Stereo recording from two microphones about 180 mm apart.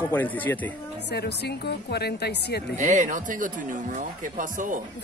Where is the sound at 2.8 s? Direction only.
45° right (ahead or behind).